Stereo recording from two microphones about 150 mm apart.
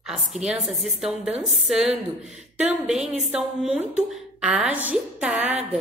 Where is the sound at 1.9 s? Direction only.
50° right (ahead or behind).